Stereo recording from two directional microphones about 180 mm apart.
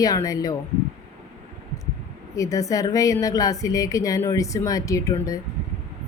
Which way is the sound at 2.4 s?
20° left (ahead or behind).